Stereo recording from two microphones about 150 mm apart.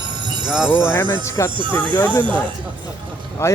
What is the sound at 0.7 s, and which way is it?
Speech, 15° left (ahead or behind).